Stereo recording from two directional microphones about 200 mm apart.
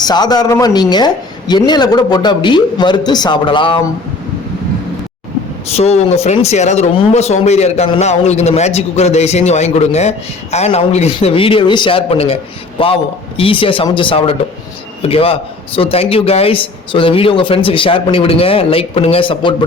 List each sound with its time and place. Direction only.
0.0 s a man's voice: 20° left (ahead or behind)
5.6 s a man's voice: 30° left (ahead or behind)